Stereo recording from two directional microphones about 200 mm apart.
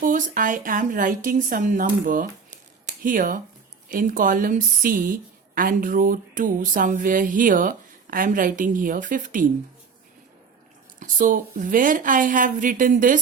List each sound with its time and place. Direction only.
0.0 s a woman's voice: 40° right (ahead or behind)
11.0 s a woman's voice: 40° right (ahead or behind)